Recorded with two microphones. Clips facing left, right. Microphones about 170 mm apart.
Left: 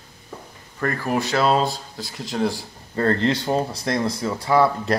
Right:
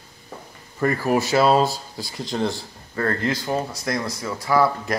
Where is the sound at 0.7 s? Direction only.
5° right (ahead or behind).